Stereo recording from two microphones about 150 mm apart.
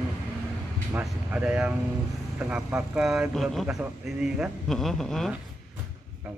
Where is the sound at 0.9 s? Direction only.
10° right (ahead or behind).